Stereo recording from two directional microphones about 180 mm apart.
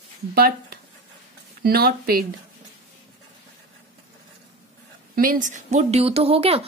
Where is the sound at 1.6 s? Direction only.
60° right (ahead or behind).